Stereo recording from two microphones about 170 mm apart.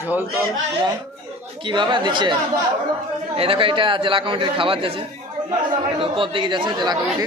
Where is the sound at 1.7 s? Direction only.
30° right (ahead or behind).